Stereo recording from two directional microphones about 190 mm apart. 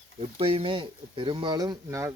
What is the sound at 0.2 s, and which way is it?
Speech, 30° right (ahead or behind).